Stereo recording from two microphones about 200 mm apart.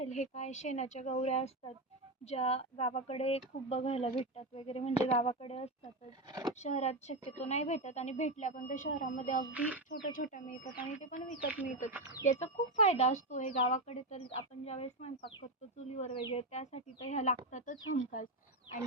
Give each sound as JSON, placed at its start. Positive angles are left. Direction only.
{"t": 0.0, "sound": "speech", "side_deg": 35}
{"t": 9.5, "sound": "speech", "side_deg": -5}
{"t": 9.9, "sound": "speech", "side_deg": 40}
{"t": 11.9, "sound": "speech", "side_deg": -10}
{"t": 12.2, "sound": "speech", "side_deg": 40}